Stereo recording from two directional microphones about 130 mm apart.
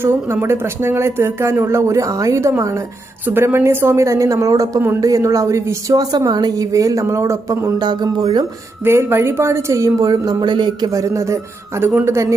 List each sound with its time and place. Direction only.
0.0 s a woman's voice: 15° right (ahead or behind); by 8.4 s 35° right (ahead or behind)
8.8 s a woman's voice: 20° right (ahead or behind)